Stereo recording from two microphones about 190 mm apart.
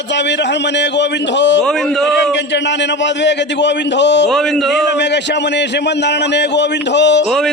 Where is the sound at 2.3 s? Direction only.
70° left (ahead or behind).